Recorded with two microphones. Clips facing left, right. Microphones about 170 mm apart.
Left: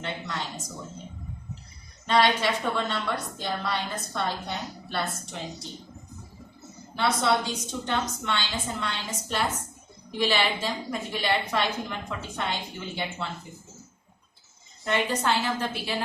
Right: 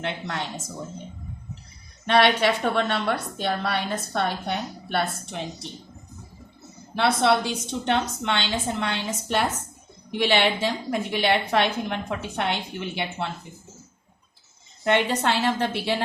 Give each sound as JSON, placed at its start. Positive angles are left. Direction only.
{"t": 0.0, "sound": "a woman's voice", "side_deg": -65}
{"t": 2.0, "sound": "a woman's voice", "side_deg": -65}
{"t": 6.9, "sound": "a woman's voice", "side_deg": -65}
{"t": 14.8, "sound": "a woman's voice", "side_deg": -70}